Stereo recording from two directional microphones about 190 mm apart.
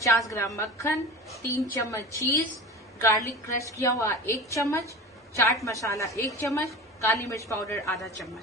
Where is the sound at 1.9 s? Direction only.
15° left (ahead or behind).